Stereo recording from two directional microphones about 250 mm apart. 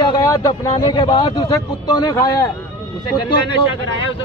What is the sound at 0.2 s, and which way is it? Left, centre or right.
A man's voice, centre.